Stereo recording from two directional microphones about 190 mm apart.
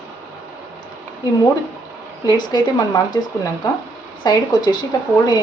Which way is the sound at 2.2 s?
20° left (ahead or behind).